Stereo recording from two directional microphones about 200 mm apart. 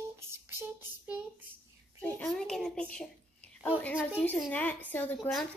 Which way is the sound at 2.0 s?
5° left (ahead or behind).